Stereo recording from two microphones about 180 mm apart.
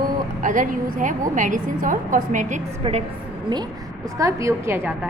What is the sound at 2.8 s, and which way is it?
Speech, 35° right (ahead or behind).